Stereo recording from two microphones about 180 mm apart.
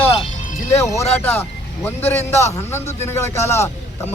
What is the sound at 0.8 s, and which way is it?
A man's voice, 15° left (ahead or behind).